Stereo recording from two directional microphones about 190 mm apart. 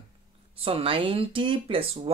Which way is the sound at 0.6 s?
30° right (ahead or behind).